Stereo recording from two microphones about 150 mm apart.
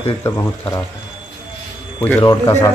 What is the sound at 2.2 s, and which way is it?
Speech, 25° left (ahead or behind).